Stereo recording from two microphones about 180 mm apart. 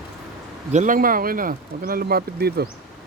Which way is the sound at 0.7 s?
45° right (ahead or behind).